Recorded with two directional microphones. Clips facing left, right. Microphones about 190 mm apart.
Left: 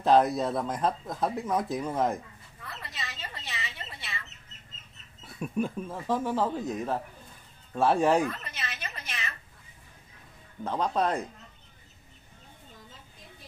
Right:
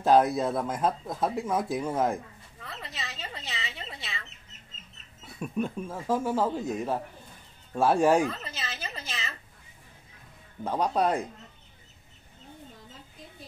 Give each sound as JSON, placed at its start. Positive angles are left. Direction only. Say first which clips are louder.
{"t": 0.0, "sound": "speech", "louder": "right 1 dB", "side_deg": -5}
{"t": 2.6, "sound": "a sound", "louder": "right 1 dB", "side_deg": -25}
{"t": 5.4, "sound": "speech", "louder": "even", "side_deg": 5}
{"t": 5.8, "sound": "speech", "louder": "right 1 dB", "side_deg": -5}
{"t": 8.3, "sound": "a sound", "louder": "right 1 dB", "side_deg": -30}
{"t": 10.6, "sound": "speech", "louder": "right 2 dB", "side_deg": -10}